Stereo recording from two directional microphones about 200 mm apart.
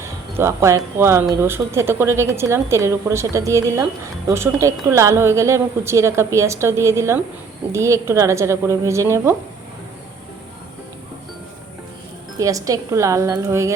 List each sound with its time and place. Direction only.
0.0 s speech: 15° right (ahead or behind)
12.4 s speech: 15° right (ahead or behind)